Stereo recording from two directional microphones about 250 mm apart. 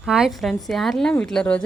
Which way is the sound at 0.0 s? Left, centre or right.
Centre.